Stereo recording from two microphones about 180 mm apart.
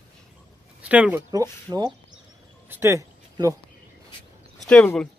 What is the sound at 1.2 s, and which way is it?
Speech, 20° right (ahead or behind).